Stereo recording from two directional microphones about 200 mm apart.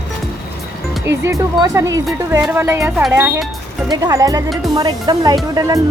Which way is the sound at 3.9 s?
20° right (ahead or behind).